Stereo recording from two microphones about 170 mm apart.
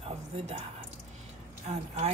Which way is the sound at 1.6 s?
40° right (ahead or behind).